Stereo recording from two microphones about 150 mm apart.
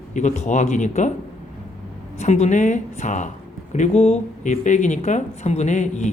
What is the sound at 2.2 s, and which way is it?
Speech, 50° left (ahead or behind).